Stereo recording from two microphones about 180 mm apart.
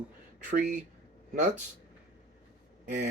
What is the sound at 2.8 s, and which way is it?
Speech, 45° right (ahead or behind).